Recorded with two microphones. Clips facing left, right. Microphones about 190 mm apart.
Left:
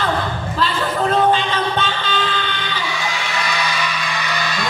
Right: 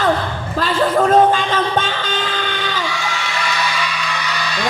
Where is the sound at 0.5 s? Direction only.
45° right (ahead or behind).